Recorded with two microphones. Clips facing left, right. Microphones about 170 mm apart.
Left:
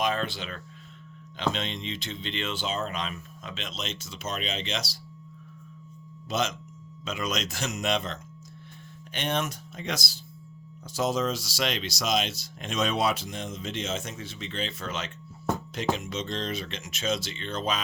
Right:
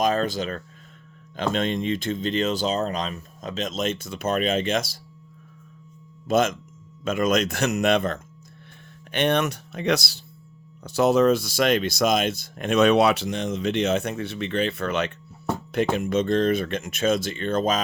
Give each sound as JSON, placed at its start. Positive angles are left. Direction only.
{"t": 0.0, "sound": "speech", "side_deg": -40}
{"t": 6.2, "sound": "speech", "side_deg": -50}